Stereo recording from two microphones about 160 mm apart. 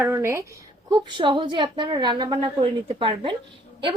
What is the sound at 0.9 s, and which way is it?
A woman's voice, 25° right (ahead or behind).